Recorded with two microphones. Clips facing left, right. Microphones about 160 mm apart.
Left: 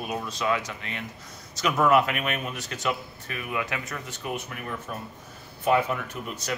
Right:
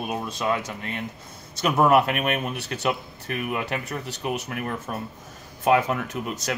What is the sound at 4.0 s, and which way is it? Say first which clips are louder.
Speech: right 4 dB; 70° right (ahead or behind).